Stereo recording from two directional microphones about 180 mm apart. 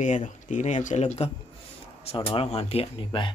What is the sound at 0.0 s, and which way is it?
Speech, 45° left (ahead or behind).